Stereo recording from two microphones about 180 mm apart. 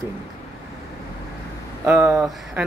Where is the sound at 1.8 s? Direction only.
10° right (ahead or behind).